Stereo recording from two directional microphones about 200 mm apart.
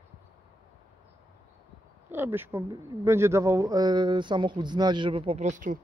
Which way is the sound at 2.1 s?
10° right (ahead or behind).